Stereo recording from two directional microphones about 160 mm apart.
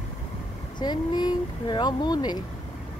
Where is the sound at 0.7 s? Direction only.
25° left (ahead or behind).